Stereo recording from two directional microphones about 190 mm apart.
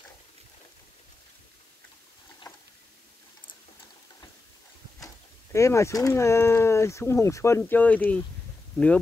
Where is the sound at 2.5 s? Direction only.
20° left (ahead or behind).